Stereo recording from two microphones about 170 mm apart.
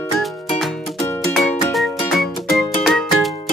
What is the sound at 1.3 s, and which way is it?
Music, centre (ahead or behind).